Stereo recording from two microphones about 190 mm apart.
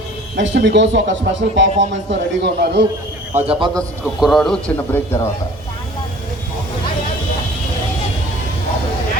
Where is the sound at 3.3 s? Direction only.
30° right (ahead or behind).